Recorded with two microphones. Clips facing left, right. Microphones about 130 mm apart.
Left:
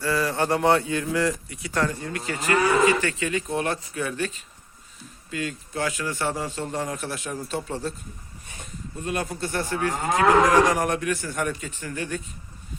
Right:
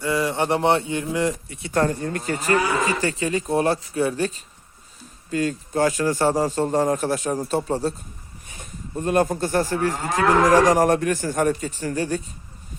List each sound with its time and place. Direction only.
0.0 s speech: 20° right (ahead or behind)
1.7 s a man's voice: 45° right (ahead or behind)
9.0 s a man's voice: 45° right (ahead or behind)